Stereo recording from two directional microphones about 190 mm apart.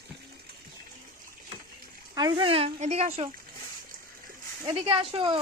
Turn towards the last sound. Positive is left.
turn(degrees=-30)  # may be behind; listen again after turning